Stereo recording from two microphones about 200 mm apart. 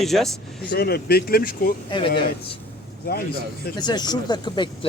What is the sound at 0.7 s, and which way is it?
Speech, 50° left (ahead or behind).